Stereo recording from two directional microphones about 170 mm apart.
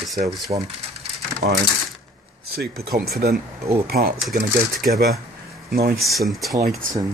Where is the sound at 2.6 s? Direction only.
65° right (ahead or behind).